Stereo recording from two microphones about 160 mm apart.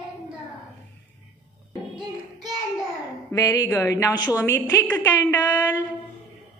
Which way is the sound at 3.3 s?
20° left (ahead or behind).